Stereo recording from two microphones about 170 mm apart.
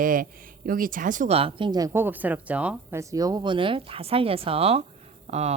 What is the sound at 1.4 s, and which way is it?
Speech, 30° right (ahead or behind).